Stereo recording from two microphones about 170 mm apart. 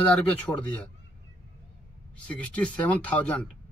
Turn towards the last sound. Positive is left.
turn(degrees=5)  # may be behind; listen again after turning